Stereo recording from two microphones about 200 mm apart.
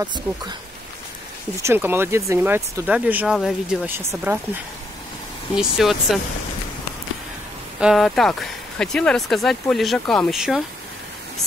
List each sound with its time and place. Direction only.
0.1 s speech: 20° right (ahead or behind)
1.6 s speech: 10° right (ahead or behind)
5.6 s speech: centre (ahead or behind)
7.8 s speech: centre (ahead or behind)